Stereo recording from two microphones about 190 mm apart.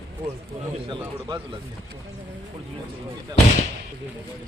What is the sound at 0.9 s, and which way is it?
Speech, 25° right (ahead or behind).